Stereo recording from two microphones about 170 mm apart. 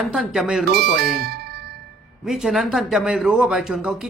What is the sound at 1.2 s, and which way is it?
Music, 70° right (ahead or behind).